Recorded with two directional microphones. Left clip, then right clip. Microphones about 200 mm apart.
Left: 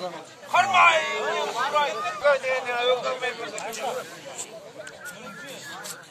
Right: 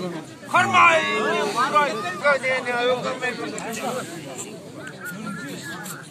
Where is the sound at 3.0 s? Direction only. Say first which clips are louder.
Right 2 dB; 35° left (ahead or behind).